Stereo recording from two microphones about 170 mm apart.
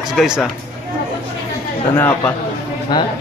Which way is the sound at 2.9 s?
25° left (ahead or behind).